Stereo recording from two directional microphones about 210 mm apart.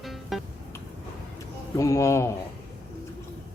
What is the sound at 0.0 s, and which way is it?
Music, centre (ahead or behind).